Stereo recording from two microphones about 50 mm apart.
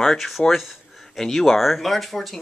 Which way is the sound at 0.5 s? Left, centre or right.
Centre.